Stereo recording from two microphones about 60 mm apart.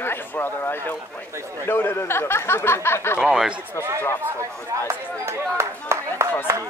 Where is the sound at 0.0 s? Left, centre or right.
Left.